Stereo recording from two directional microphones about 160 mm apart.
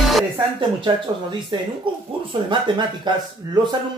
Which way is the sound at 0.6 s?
30° right (ahead or behind).